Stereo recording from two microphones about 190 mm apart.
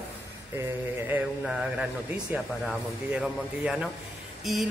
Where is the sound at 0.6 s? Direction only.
10° right (ahead or behind).